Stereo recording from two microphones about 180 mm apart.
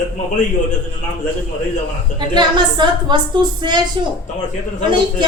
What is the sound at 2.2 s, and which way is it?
A woman's voice, 25° right (ahead or behind).